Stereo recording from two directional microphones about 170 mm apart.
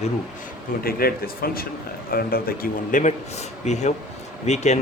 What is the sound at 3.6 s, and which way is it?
Speech, 40° left (ahead or behind).